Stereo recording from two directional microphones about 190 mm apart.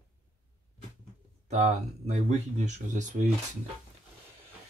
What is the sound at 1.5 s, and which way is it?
Speech, 35° right (ahead or behind).